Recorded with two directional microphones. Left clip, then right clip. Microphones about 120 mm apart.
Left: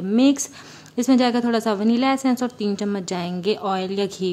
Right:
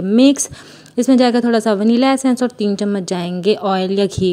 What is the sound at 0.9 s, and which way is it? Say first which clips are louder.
Speech: right 6 dB; 35° right (ahead or behind).